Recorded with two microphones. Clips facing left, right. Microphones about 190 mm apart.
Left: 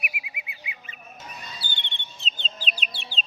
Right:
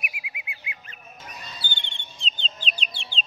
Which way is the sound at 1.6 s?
30° left (ahead or behind).